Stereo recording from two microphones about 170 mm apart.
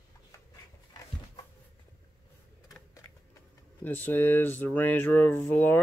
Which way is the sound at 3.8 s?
10° left (ahead or behind).